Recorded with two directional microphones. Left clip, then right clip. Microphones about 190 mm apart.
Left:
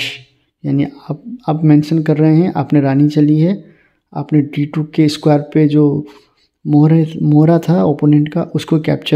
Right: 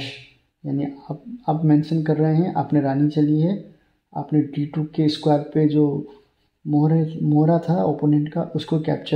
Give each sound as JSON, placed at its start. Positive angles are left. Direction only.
{"t": 0.7, "sound": "speech", "side_deg": 35}